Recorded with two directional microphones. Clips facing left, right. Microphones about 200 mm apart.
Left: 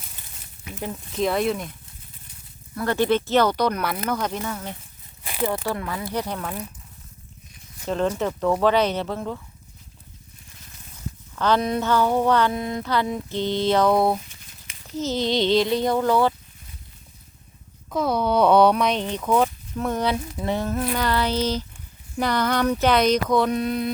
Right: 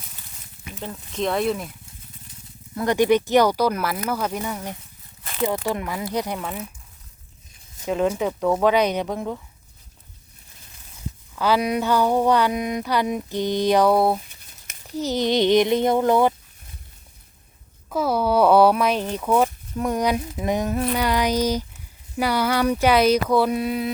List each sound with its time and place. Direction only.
1.1 s speech: centre (ahead or behind)
2.7 s speech: 15° right (ahead or behind)
7.9 s speech: 10° right (ahead or behind)
11.3 s a child's voice: 10° right (ahead or behind)
17.8 s speech: 5° right (ahead or behind)